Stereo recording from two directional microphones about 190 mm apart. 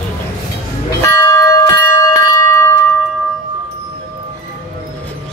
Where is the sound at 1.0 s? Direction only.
15° left (ahead or behind).